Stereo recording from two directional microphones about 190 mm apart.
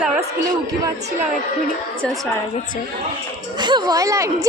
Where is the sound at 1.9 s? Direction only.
Centre (ahead or behind).